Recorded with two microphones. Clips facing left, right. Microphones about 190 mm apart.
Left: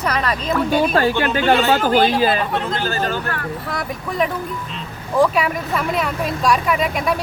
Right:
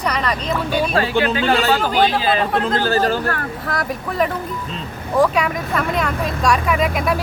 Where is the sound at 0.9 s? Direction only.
45° left (ahead or behind).